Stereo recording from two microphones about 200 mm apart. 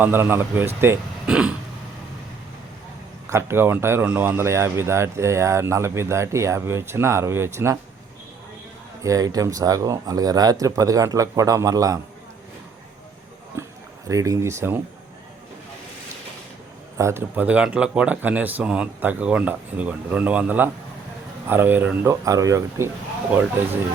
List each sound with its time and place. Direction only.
0.0 s speech: 10° right (ahead or behind)
3.3 s speech: 10° right (ahead or behind)
9.0 s speech: 15° right (ahead or behind)
14.1 s speech: 15° right (ahead or behind)
17.0 s speech: 15° right (ahead or behind)